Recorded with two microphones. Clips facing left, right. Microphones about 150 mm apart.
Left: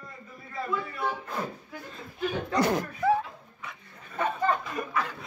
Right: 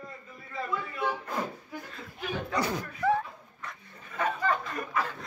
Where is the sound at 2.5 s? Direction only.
50° left (ahead or behind).